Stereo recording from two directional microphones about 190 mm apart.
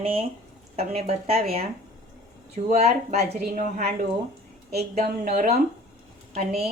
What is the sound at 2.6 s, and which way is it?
Speech, 35° right (ahead or behind).